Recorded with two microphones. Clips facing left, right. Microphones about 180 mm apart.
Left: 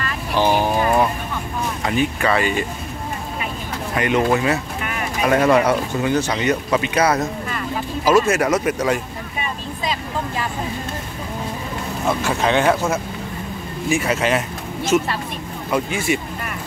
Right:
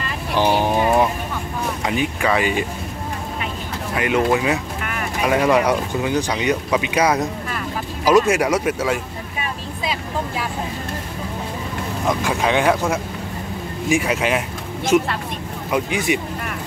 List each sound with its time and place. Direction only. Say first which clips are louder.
1.9 s speech: left 1 dB; 10° right (ahead or behind)
3.9 s speech: even; 5° right (ahead or behind)
12.2 s speech: left 1 dB; 10° right (ahead or behind)
13.8 s speech: even; 15° right (ahead or behind)